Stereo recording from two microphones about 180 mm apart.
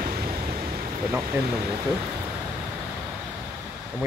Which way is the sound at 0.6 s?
45° right (ahead or behind).